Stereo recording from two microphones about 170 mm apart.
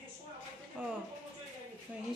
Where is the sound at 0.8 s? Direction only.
10° right (ahead or behind).